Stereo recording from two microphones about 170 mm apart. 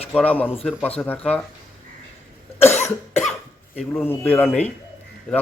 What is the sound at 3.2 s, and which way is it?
Cough, centre (ahead or behind).